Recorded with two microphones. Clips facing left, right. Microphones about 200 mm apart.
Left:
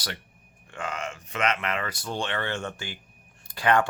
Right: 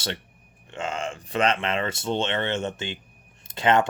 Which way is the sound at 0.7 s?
25° right (ahead or behind).